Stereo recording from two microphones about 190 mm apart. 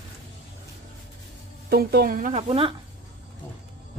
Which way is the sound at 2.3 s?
30° right (ahead or behind).